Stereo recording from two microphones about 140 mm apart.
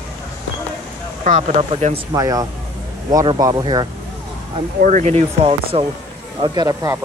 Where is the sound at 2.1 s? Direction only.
25° right (ahead or behind).